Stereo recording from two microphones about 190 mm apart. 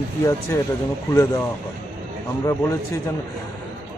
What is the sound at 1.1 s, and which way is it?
Speech, 15° left (ahead or behind).